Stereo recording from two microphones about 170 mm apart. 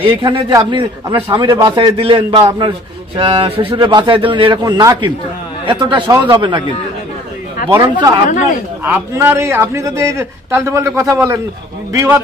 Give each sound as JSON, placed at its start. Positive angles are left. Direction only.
{"t": 0.0, "sound": "a man's voice", "side_deg": -30}
{"t": 7.7, "sound": "a man's voice", "side_deg": -20}